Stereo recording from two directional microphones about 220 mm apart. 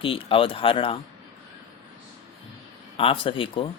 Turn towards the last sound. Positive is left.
turn(degrees=25)  # may be behind; listen again after turning